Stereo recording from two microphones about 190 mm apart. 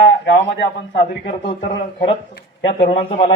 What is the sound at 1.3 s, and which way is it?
Speech, 40° left (ahead or behind).